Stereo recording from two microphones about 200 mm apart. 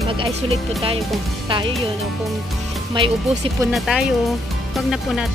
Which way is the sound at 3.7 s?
Centre (ahead or behind).